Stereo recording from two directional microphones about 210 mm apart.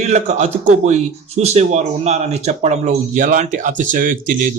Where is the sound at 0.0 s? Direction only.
35° right (ahead or behind).